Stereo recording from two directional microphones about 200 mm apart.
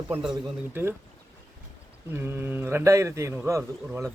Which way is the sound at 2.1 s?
10° right (ahead or behind).